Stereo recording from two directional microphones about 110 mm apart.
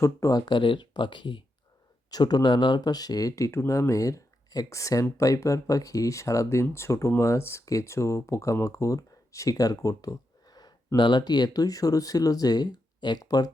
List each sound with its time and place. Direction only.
0.0 s speech: 30° left (ahead or behind)